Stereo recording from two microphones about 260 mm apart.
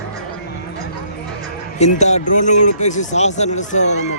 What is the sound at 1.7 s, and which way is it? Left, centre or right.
A man's voice, left.